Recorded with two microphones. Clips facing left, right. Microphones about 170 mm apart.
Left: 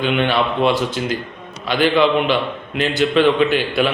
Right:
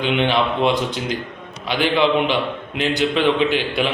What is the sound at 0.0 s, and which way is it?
A man's voice, 15° right (ahead or behind).